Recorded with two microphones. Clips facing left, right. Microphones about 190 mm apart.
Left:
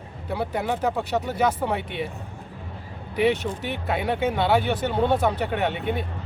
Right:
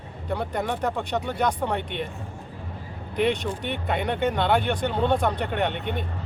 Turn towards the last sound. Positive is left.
turn(degrees=5)  # may be behind; listen again after turning